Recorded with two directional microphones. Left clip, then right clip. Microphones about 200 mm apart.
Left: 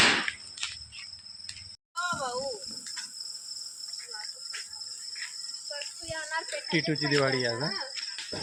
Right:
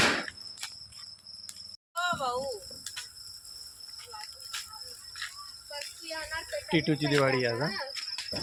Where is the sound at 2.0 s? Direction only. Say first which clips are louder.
Right 1 dB; 45° right (ahead or behind).